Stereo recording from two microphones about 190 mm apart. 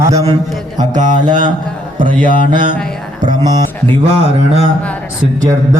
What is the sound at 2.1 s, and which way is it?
Mantra, 45° right (ahead or behind).